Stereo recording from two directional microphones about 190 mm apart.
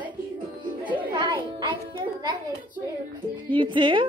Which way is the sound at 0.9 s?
25° right (ahead or behind).